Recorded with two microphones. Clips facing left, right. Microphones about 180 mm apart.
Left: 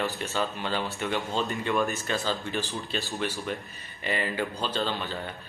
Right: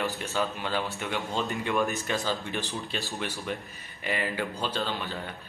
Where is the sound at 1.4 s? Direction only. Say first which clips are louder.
Even; 15° right (ahead or behind).